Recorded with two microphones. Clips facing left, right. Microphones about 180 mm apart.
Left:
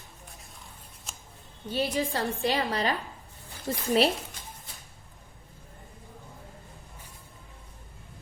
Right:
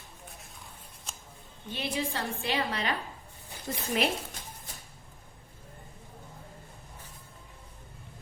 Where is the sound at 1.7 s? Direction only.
35° left (ahead or behind).